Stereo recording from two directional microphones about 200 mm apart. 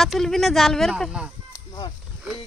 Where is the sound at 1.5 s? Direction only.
20° left (ahead or behind).